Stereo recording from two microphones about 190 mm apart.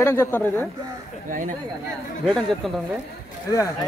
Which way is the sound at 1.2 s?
45° right (ahead or behind).